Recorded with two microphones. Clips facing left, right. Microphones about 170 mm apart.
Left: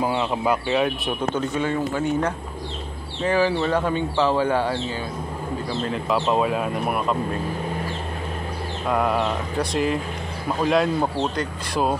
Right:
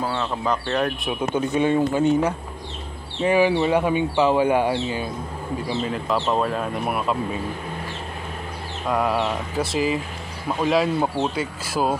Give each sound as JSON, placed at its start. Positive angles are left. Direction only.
{"t": 0.0, "sound": "speech", "side_deg": 15}
{"t": 1.3, "sound": "speech", "side_deg": -15}
{"t": 5.8, "sound": "speech", "side_deg": 0}
{"t": 8.8, "sound": "speech", "side_deg": 0}